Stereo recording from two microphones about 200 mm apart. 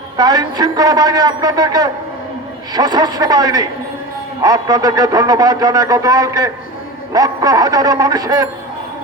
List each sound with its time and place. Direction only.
0.2 s a man's voice: 20° right (ahead or behind)